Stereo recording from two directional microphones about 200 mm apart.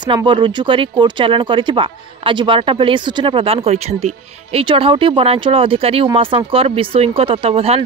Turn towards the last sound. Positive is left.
turn(degrees=-30)  # may be behind; listen again after turning